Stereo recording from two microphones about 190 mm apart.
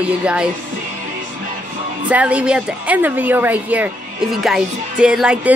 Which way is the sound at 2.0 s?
5° right (ahead or behind).